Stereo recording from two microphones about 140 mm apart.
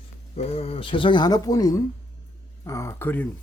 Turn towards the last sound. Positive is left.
turn(degrees=15)  # may be behind; listen again after turning